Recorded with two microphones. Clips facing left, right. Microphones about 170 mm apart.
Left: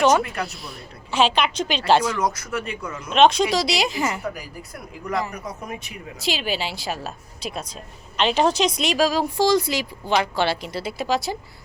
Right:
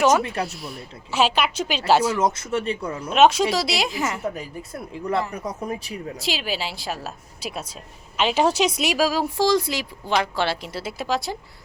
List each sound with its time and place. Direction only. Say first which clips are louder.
0.2 s speech: right 1 dB; 30° right (ahead or behind)
1.1 s a woman's voice: left 1 dB; 5° right (ahead or behind)
2.1 s speech: right 2 dB; 25° right (ahead or behind)
3.1 s a woman's voice: even; 5° right (ahead or behind)
4.2 s speech: right 2 dB; 25° right (ahead or behind)
6.1 s a woman's voice: left 3 dB; centre (ahead or behind)